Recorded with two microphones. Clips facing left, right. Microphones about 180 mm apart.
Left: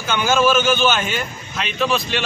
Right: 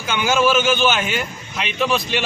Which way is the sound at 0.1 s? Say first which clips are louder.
Left 1 dB; 15° right (ahead or behind).